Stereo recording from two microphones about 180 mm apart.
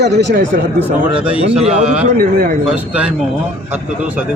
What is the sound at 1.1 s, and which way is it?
A man's voice, 35° right (ahead or behind).